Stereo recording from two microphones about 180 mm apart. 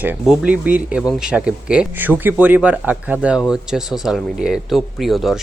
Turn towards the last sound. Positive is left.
turn(degrees=0)  # may be behind; listen again after turning